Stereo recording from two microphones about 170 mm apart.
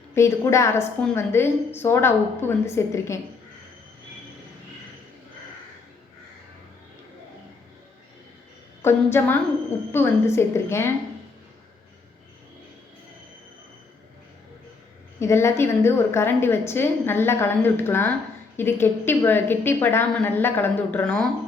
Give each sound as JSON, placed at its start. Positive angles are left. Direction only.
{"t": 0.1, "sound": "a woman's voice", "side_deg": 15}
{"t": 8.8, "sound": "a woman's voice", "side_deg": 15}
{"t": 15.2, "sound": "a woman's voice", "side_deg": 15}